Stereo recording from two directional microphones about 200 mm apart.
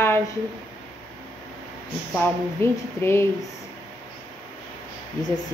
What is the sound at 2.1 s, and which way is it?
A woman's voice, 10° left (ahead or behind).